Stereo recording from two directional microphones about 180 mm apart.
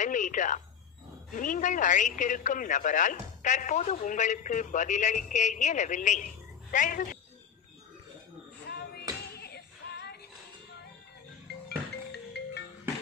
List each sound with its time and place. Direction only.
0.0 s speech: 45° left (ahead or behind)
8.6 s a sound: 65° left (ahead or behind)
9.4 s music: 65° left (ahead or behind)
12.1 s music: 70° left (ahead or behind)